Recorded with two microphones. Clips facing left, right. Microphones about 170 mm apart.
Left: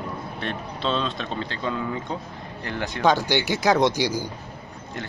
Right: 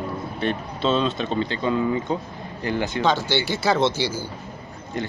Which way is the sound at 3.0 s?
15° left (ahead or behind).